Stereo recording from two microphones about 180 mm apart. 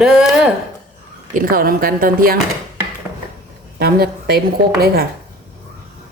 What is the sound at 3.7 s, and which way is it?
A woman's voice, 60° right (ahead or behind).